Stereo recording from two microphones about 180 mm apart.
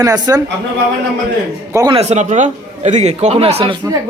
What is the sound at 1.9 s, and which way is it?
A man's voice, 40° right (ahead or behind).